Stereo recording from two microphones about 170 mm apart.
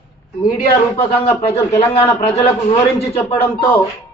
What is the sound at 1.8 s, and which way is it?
Speech, 35° left (ahead or behind).